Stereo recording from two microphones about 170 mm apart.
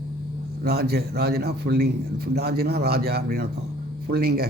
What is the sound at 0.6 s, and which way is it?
A man's voice, 70° right (ahead or behind).